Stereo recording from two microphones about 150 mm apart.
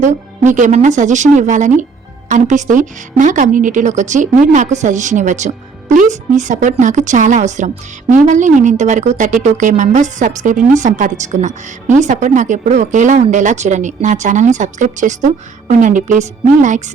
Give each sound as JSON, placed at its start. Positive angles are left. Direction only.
{"t": 0.0, "sound": "a woman's voice", "side_deg": -55}